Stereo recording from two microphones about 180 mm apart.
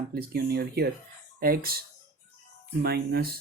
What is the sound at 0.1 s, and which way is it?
Speech, 60° right (ahead or behind).